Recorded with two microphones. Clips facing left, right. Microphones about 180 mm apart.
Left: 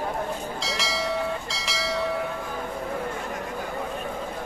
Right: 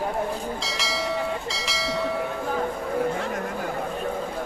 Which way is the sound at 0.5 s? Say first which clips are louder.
Even; centre (ahead or behind).